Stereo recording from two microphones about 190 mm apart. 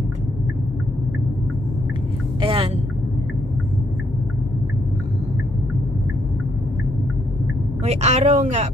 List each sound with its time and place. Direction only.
2.4 s vehicle: 25° right (ahead or behind)
7.8 s speech: 35° right (ahead or behind)